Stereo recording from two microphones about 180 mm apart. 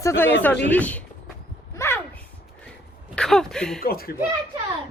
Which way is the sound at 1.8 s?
15° left (ahead or behind).